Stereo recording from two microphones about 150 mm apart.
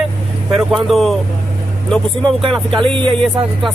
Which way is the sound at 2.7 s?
35° right (ahead or behind).